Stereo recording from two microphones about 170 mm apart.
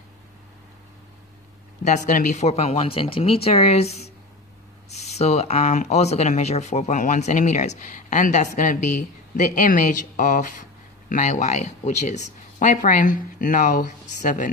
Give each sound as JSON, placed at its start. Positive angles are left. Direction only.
{"t": 1.9, "sound": "speech", "side_deg": 45}